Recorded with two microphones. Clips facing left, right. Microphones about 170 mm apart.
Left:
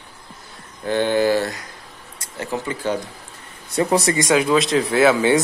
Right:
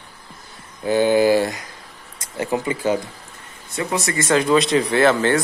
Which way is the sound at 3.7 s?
35° left (ahead or behind).